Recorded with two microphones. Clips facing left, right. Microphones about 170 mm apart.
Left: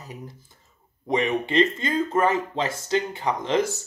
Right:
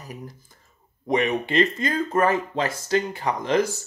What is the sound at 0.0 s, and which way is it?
Speech, 25° left (ahead or behind).